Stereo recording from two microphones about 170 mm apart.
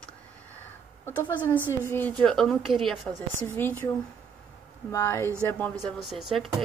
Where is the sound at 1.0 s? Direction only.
10° left (ahead or behind).